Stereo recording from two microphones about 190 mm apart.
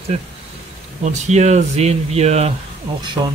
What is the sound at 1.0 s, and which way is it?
Speech, 40° right (ahead or behind).